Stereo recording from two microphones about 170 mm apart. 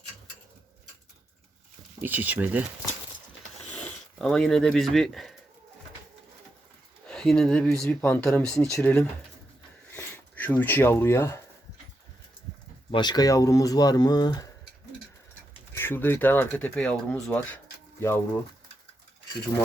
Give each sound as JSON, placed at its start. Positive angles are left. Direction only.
{"t": 2.0, "sound": "speech", "side_deg": -10}
{"t": 3.8, "sound": "speech", "side_deg": 5}
{"t": 7.1, "sound": "speech", "side_deg": 5}
{"t": 12.9, "sound": "speech", "side_deg": 25}
{"t": 15.7, "sound": "speech", "side_deg": 10}